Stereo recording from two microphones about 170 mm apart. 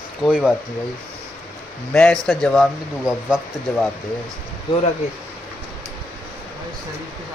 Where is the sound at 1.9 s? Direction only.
5° left (ahead or behind).